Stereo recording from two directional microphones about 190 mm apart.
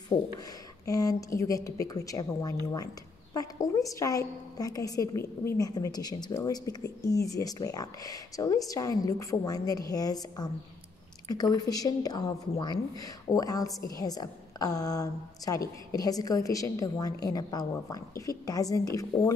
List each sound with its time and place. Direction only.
0.1 s speech: 30° left (ahead or behind)
0.8 s a woman's voice: 20° left (ahead or behind)